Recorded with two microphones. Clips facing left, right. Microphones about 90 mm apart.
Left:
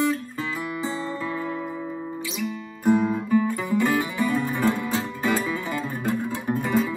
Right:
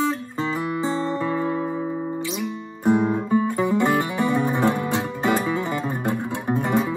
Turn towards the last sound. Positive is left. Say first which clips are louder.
# right 2 dB
turn(degrees=-20)  # may be behind; listen again after turning